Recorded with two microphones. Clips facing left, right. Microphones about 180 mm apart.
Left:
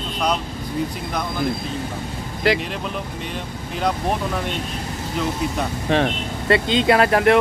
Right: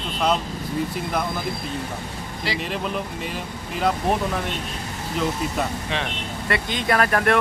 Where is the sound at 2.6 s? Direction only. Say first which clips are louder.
Even; centre (ahead or behind).